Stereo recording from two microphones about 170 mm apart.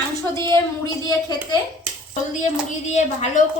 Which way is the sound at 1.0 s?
20° left (ahead or behind).